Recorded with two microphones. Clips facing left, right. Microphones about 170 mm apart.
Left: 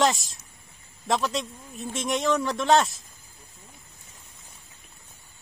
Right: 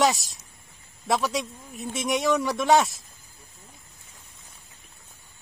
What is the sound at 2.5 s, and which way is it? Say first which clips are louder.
Speech: right 1 dB; 15° right (ahead or behind).